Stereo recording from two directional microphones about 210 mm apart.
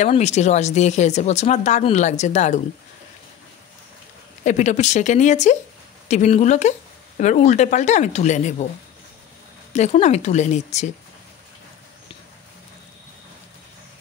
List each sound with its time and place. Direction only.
0.0 s speech: 35° left (ahead or behind)
4.5 s speech: 35° left (ahead or behind)
9.7 s speech: 35° left (ahead or behind)